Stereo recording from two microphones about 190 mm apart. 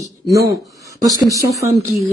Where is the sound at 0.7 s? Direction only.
15° right (ahead or behind).